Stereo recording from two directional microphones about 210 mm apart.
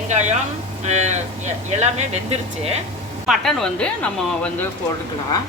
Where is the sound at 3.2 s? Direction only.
Centre (ahead or behind).